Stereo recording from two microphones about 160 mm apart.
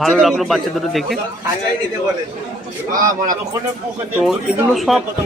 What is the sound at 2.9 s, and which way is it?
Speech, 55° right (ahead or behind).